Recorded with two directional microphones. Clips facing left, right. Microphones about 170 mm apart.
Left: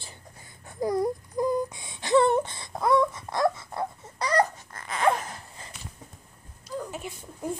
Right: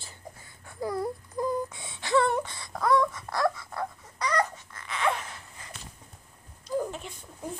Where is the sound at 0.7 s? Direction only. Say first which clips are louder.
Left 5 dB; 15° left (ahead or behind); by 5.4 s 40° left (ahead or behind).